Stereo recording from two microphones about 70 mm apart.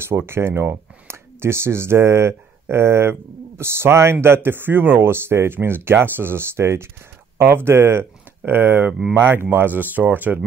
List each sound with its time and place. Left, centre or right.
0.3 s speech: right